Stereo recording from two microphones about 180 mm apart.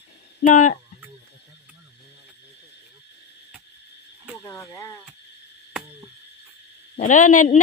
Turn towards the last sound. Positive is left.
turn(degrees=45)  # may be behind; listen again after turning